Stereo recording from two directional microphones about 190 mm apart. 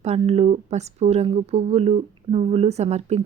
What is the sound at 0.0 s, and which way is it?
Speech, 35° right (ahead or behind).